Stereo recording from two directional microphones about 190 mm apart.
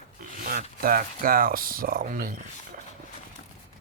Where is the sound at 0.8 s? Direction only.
50° right (ahead or behind).